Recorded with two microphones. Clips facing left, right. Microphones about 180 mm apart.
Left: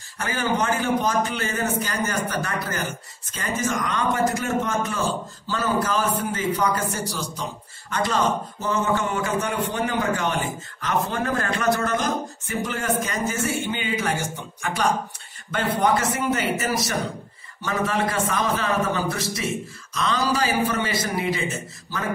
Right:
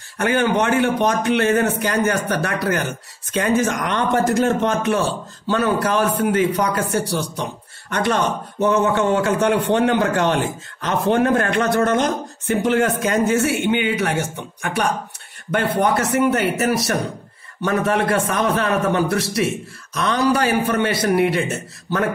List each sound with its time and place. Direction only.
0.2 s a man's voice: 65° right (ahead or behind)